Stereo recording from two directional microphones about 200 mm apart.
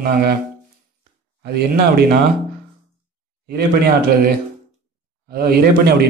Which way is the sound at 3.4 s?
50° right (ahead or behind).